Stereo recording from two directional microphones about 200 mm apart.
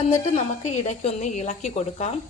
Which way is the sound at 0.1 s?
35° left (ahead or behind).